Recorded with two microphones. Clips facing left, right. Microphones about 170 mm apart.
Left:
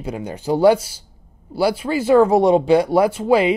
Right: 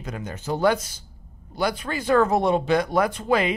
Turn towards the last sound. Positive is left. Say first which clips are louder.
# left 6 dB
turn(degrees=10)  # may be behind; listen again after turning